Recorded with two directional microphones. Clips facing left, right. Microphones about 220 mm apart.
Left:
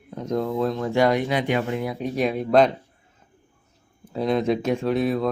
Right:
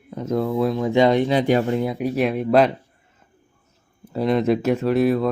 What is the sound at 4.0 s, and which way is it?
Speech, centre (ahead or behind).